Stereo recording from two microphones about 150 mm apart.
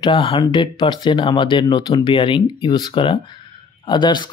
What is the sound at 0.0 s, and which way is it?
Speech, 35° left (ahead or behind).